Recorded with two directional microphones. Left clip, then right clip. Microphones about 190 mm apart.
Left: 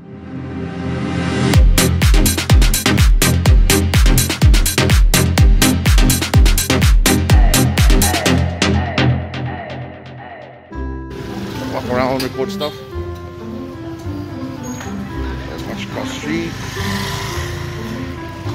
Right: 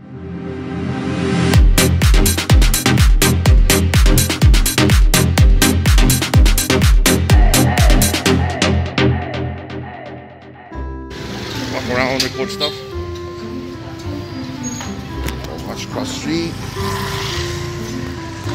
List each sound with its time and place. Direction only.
1.1 s music: centre (ahead or behind)
11.7 s music: 20° left (ahead or behind)
12.4 s speech: 15° left (ahead or behind)
16.0 s music: 15° right (ahead or behind)